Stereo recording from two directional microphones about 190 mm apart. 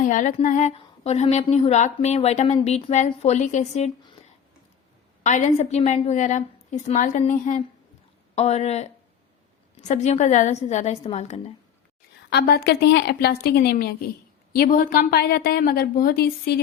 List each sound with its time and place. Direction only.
0.0 s a woman's voice: 45° left (ahead or behind)
5.2 s a woman's voice: 40° left (ahead or behind)
12.3 s a woman's voice: 55° left (ahead or behind)